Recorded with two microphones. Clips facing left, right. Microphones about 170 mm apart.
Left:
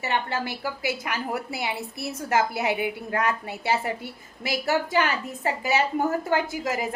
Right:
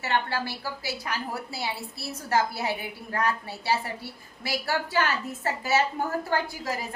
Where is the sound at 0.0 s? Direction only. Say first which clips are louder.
Left 1 dB; 15° left (ahead or behind).